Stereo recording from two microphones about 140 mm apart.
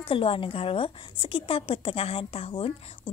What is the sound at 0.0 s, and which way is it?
A woman's voice, 40° left (ahead or behind).